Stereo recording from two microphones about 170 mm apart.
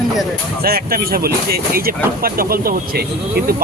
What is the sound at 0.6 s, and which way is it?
Speech, 60° right (ahead or behind).